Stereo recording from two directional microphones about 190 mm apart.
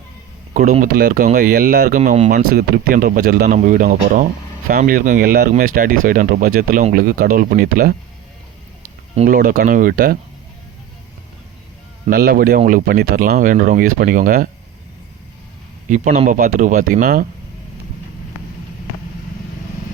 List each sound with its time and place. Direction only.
0.5 s speech: 40° right (ahead or behind)
1.5 s speech: 55° right (ahead or behind)
2.0 s speech: 35° right (ahead or behind)
2.6 s speech: 50° right (ahead or behind)
9.2 s speech: 45° right (ahead or behind)
12.1 s speech: 55° right (ahead or behind)
15.9 s speech: 40° right (ahead or behind)